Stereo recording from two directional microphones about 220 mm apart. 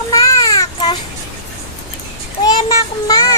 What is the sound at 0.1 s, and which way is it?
Child singing, 15° left (ahead or behind).